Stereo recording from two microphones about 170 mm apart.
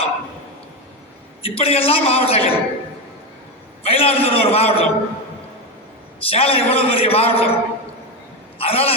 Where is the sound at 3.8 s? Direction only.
35° left (ahead or behind).